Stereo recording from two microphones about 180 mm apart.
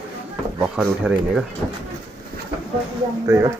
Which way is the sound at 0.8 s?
5° right (ahead or behind).